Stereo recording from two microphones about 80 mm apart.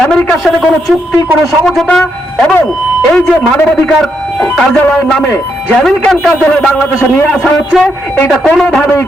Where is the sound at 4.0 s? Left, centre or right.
Centre; by 8.3 s left.